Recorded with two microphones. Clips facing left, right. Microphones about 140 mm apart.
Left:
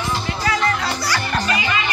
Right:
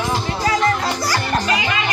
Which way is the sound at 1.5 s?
75° right (ahead or behind).